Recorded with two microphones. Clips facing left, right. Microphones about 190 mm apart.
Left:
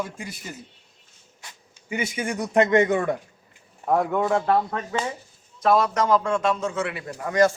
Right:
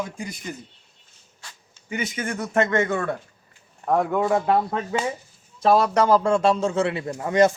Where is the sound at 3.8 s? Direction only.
5° left (ahead or behind).